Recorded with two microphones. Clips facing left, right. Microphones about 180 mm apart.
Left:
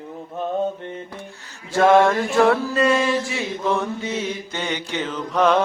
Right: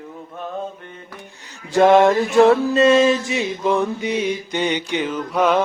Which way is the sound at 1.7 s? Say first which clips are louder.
Right 2 dB; 20° right (ahead or behind).